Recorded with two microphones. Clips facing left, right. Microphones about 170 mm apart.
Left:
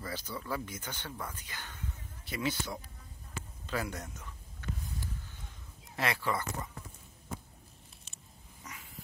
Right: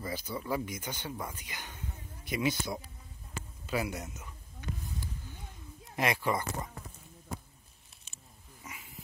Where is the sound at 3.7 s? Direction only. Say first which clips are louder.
Right 3 dB; 10° right (ahead or behind).